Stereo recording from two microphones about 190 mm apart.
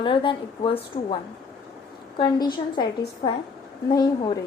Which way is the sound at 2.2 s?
25° left (ahead or behind).